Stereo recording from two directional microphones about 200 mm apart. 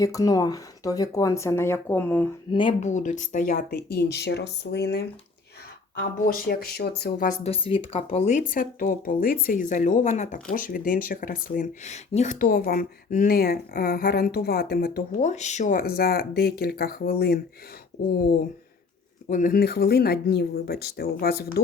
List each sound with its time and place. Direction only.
0.0 s speech: 15° left (ahead or behind)
2.5 s speech: 25° left (ahead or behind)
2.8 s speech: 40° left (ahead or behind); by 5.0 s 55° left (ahead or behind)
6.0 s speech: 45° left (ahead or behind)
19.3 s speech: 45° left (ahead or behind)